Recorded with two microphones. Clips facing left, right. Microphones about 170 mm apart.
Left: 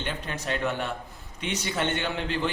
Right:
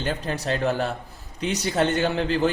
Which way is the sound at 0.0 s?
35° right (ahead or behind).